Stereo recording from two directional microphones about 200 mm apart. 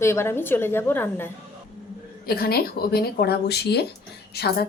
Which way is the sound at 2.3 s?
50° left (ahead or behind).